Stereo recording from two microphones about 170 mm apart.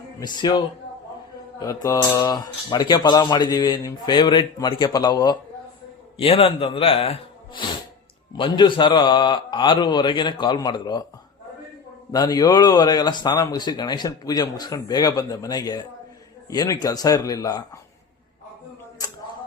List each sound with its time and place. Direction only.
0.2 s speech: 25° left (ahead or behind)
12.1 s speech: 20° left (ahead or behind)